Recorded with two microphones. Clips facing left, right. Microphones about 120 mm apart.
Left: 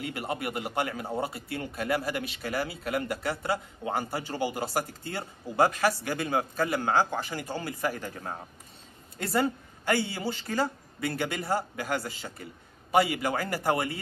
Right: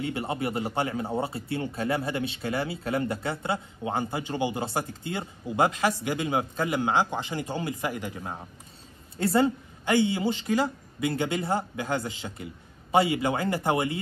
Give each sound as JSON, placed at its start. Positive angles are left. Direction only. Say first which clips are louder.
{"t": 0.0, "sound": "speech", "louder": "right 3 dB", "side_deg": -25}
{"t": 9.2, "sound": "speech", "louder": "right 4 dB", "side_deg": -25}